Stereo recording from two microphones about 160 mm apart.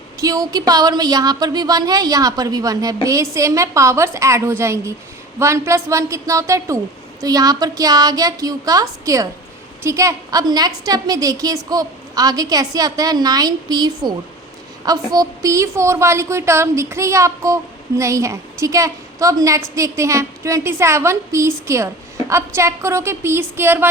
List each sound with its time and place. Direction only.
0.2 s a woman's voice: 20° right (ahead or behind)